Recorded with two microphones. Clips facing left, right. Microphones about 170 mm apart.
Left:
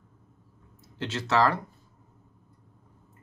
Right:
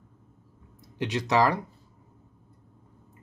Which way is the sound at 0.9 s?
15° right (ahead or behind).